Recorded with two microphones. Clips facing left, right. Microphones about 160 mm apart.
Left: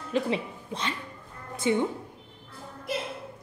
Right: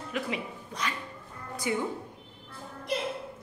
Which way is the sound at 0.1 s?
30° left (ahead or behind).